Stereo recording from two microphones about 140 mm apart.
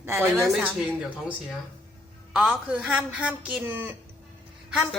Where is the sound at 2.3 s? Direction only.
10° right (ahead or behind).